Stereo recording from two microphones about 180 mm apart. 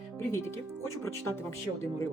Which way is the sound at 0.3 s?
15° left (ahead or behind).